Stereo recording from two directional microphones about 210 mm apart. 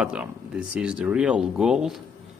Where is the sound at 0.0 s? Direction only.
5° right (ahead or behind).